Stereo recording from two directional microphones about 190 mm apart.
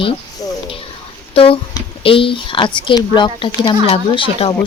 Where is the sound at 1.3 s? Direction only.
30° left (ahead or behind).